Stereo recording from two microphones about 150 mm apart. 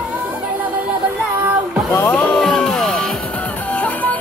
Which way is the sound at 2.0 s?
5° left (ahead or behind).